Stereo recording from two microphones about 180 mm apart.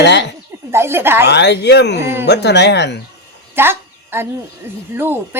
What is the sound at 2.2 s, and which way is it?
Speech, 70° left (ahead or behind).